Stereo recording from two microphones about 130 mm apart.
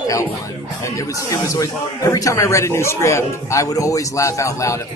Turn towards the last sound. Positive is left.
turn(degrees=25)  # may be behind; listen again after turning